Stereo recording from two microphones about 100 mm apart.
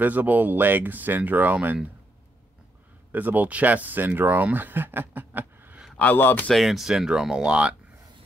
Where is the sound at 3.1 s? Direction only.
15° right (ahead or behind).